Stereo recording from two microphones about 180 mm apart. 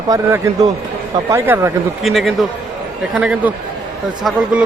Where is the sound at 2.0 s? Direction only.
Centre (ahead or behind).